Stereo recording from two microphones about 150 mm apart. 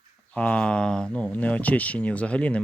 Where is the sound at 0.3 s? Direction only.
10° left (ahead or behind).